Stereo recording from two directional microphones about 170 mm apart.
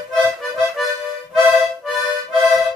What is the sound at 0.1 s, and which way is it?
Music, centre (ahead or behind).